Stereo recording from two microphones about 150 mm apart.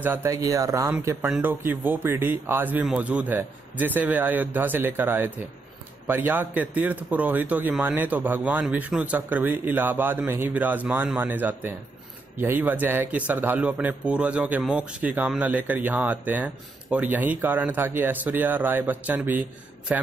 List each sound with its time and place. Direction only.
0.0 s speech: 15° right (ahead or behind)